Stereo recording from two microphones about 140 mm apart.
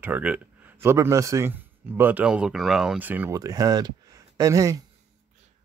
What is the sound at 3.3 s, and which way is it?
Speech, 25° right (ahead or behind).